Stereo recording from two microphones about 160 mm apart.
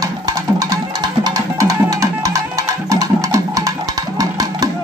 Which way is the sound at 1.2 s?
20° right (ahead or behind).